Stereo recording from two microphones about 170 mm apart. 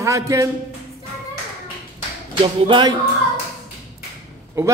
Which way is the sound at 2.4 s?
30° right (ahead or behind).